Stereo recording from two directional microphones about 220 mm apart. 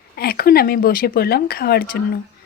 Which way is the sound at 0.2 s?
45° left (ahead or behind).